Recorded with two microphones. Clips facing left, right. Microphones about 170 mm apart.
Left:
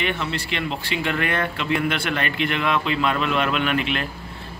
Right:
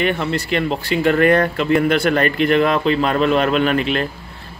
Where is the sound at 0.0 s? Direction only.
45° right (ahead or behind).